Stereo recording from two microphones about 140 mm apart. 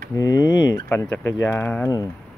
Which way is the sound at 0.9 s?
15° left (ahead or behind).